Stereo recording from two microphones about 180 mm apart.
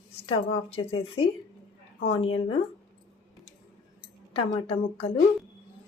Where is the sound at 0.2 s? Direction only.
30° left (ahead or behind).